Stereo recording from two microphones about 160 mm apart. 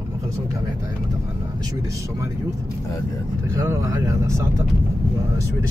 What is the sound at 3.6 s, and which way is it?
Speech, 20° right (ahead or behind).